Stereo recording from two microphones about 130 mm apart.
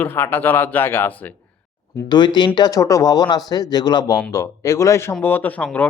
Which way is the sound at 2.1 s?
35° left (ahead or behind).